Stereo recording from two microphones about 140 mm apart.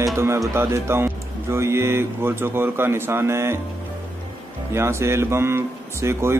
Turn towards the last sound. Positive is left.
turn(degrees=-20)  # may be behind; listen again after turning